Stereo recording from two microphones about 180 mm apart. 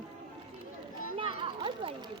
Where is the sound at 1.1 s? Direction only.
30° right (ahead or behind).